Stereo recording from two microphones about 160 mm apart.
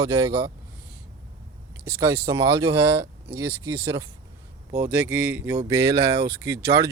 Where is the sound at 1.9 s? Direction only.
20° right (ahead or behind).